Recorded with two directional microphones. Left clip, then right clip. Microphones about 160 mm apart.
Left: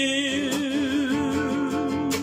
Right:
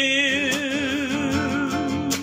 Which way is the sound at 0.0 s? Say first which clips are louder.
Right 4 dB; 25° left (ahead or behind).